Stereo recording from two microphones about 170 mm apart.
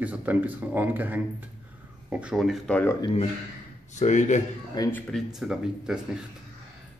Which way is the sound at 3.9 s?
45° left (ahead or behind).